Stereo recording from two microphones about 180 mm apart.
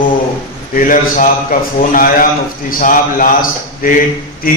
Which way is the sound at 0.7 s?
50° left (ahead or behind).